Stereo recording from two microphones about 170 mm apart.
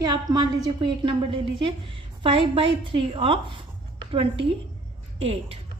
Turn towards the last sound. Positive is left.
turn(degrees=-35)  # may be behind; listen again after turning